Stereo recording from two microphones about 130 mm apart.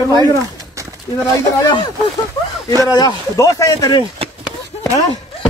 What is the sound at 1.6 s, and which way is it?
Speech, 35° left (ahead or behind).